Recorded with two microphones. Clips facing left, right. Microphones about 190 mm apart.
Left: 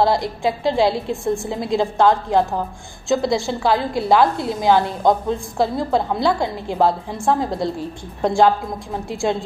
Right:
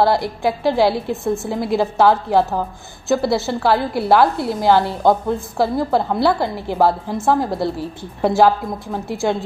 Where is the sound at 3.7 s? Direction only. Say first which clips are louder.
Right 1 dB; 20° left (ahead or behind).